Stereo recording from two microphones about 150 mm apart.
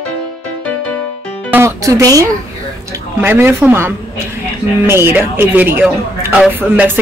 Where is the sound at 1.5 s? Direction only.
20° right (ahead or behind).